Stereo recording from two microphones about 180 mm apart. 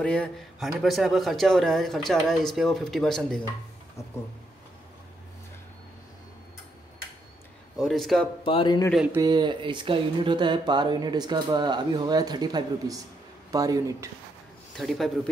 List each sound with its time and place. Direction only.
0.0 s speech: 5° left (ahead or behind)
7.9 s speech: centre (ahead or behind)
8.5 s a man's voice: 25° left (ahead or behind)
8.9 s speech: 5° right (ahead or behind)
9.2 s speech: 25° right (ahead or behind)
14.8 s speech: centre (ahead or behind)